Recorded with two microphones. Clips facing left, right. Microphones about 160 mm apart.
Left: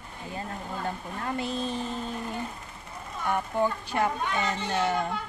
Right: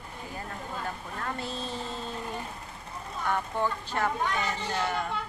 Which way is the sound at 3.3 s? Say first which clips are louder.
Left 3 dB; 15° left (ahead or behind).